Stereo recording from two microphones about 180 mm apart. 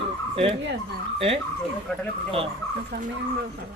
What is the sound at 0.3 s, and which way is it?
Fowl, 30° right (ahead or behind).